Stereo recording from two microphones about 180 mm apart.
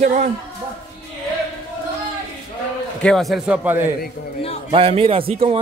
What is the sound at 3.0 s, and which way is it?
Speech, 5° left (ahead or behind).